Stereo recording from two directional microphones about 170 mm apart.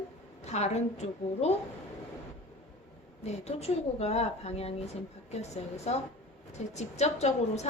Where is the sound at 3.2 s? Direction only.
40° left (ahead or behind).